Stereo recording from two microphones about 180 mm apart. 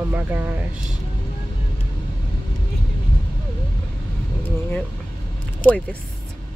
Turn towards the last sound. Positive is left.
turn(degrees=10)  # may be behind; listen again after turning